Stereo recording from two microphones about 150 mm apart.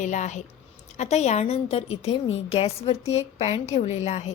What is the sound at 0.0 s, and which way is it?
A woman's voice, 55° left (ahead or behind).